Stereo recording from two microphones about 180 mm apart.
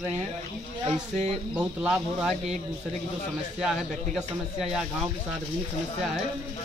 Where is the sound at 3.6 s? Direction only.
Centre (ahead or behind).